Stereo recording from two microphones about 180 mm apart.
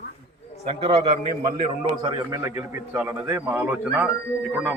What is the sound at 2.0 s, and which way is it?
A man's voice, 20° right (ahead or behind).